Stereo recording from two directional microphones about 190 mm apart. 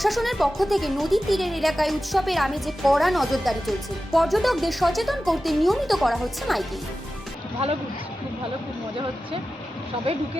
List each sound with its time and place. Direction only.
0.0 s a woman's voice: centre (ahead or behind)
10.1 s speech: 30° right (ahead or behind)